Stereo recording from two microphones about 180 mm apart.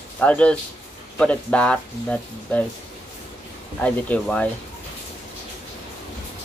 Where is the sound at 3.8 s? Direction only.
5° left (ahead or behind).